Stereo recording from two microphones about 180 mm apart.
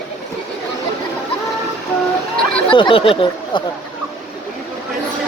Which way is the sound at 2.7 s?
25° left (ahead or behind).